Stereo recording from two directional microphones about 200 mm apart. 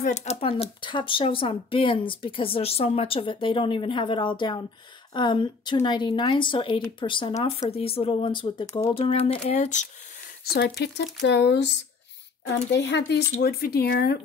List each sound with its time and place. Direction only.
0.0 s speech: 35° left (ahead or behind)
10.4 s speech: 50° left (ahead or behind)